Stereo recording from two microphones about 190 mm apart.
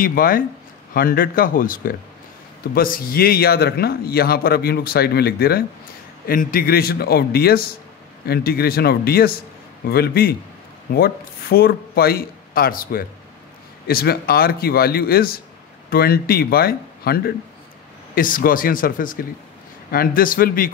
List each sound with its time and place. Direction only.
0.0 s a man's voice: 50° left (ahead or behind)